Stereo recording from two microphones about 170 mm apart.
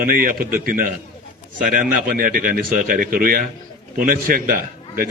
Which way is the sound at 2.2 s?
55° right (ahead or behind).